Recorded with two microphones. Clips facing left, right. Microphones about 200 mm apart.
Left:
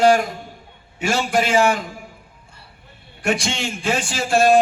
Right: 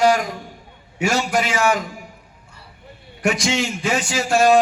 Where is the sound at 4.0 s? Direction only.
30° left (ahead or behind).